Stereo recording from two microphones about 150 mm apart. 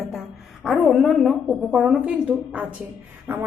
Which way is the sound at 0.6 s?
Centre (ahead or behind).